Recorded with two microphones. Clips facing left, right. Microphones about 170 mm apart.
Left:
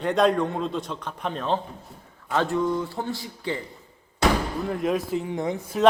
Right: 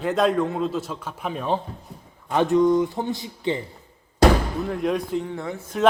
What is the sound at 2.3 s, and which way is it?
Speech, 20° right (ahead or behind).